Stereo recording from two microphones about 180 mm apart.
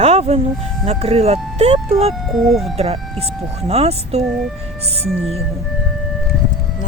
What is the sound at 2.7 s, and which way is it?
Speech, 35° right (ahead or behind).